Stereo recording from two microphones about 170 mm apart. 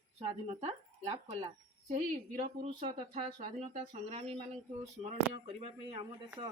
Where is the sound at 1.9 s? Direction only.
50° right (ahead or behind).